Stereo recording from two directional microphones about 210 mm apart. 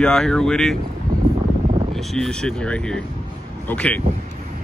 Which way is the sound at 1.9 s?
Centre (ahead or behind).